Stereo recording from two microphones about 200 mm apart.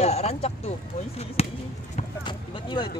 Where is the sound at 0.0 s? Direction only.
30° left (ahead or behind).